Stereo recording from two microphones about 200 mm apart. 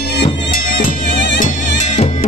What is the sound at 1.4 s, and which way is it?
Music, 35° left (ahead or behind).